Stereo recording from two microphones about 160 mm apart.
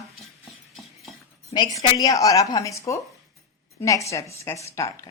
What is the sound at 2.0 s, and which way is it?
A woman's voice, 20° left (ahead or behind).